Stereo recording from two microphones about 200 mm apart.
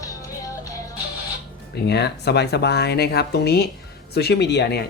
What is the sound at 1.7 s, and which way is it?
Speech, 55° left (ahead or behind).